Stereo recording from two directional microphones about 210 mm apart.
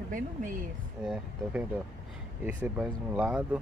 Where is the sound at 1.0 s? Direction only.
5° right (ahead or behind).